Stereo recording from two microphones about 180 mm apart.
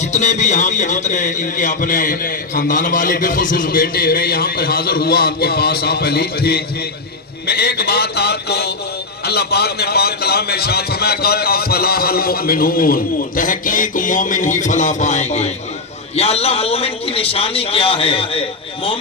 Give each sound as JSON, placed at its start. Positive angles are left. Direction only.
{"t": 0.0, "sound": "a man's voice", "side_deg": 40}